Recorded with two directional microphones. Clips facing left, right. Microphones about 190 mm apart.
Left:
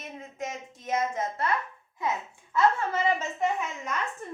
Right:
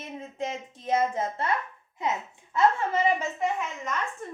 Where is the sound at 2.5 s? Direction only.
15° right (ahead or behind).